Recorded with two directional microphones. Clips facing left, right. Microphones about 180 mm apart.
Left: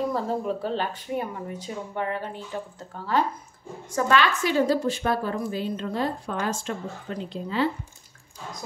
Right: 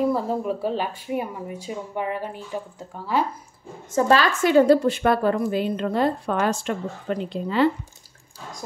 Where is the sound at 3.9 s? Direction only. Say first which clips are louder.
Right 3 dB; 30° right (ahead or behind); by 7.7 s 65° right (ahead or behind).